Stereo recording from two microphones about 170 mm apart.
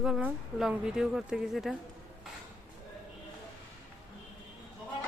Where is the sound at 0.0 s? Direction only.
5° right (ahead or behind).